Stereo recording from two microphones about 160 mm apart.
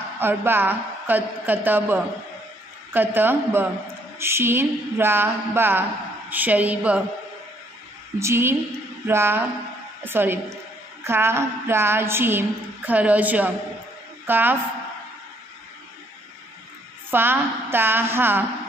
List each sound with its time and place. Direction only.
0.2 s a woman's voice: 15° right (ahead or behind)
8.2 s a woman's voice: 15° right (ahead or behind)
17.1 s a woman's voice: 15° right (ahead or behind)